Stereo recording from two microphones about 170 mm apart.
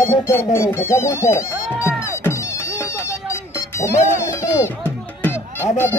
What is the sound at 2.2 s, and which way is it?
Music, 15° left (ahead or behind).